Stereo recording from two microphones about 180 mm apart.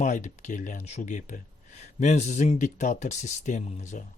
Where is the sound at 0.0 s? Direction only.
45° left (ahead or behind).